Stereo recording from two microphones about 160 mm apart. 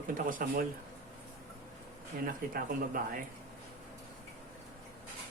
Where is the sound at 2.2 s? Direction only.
65° right (ahead or behind).